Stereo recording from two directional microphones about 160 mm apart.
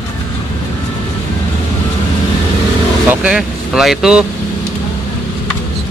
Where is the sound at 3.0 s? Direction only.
5° right (ahead or behind).